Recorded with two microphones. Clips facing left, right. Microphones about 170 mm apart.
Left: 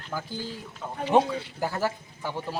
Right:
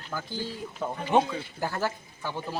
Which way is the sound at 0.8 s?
65° right (ahead or behind).